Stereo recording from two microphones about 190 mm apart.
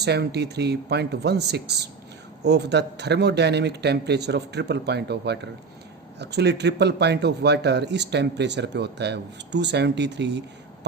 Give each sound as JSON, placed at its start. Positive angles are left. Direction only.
{"t": 0.0, "sound": "a man's voice", "side_deg": -60}